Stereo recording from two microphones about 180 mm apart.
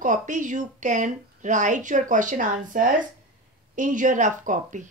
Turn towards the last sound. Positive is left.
turn(degrees=-45)  # may be behind; listen again after turning